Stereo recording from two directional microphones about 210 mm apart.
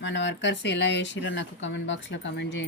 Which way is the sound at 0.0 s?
60° left (ahead or behind).